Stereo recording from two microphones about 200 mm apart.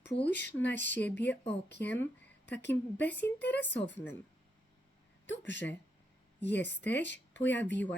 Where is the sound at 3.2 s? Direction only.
55° left (ahead or behind).